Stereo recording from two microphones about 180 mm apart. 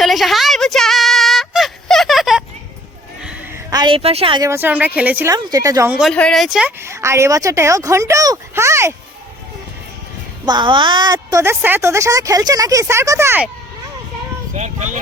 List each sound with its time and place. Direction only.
0.0 s a sound: centre (ahead or behind)
3.7 s a woman's voice: 25° right (ahead or behind)
4.4 s a woman's voice: 10° right (ahead or behind)
6.0 s a woman's voice: 5° left (ahead or behind); by 9.0 s 15° right (ahead or behind)
10.4 s a woman's voice: 25° right (ahead or behind)
14.5 s a sound: 40° right (ahead or behind)